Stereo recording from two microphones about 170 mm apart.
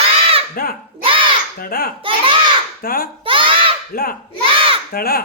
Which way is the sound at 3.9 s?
60° left (ahead or behind).